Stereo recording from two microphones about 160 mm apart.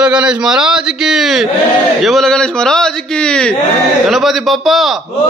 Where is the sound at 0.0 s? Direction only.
5° right (ahead or behind).